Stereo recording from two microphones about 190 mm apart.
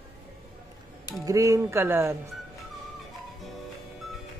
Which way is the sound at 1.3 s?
15° right (ahead or behind).